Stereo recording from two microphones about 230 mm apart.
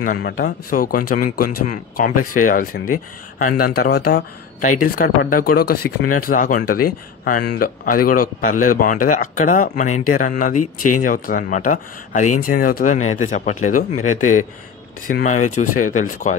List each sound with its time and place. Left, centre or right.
0.0 s speech: left
10.5 s speech: left
11.2 s speech: left
15.0 s speech: left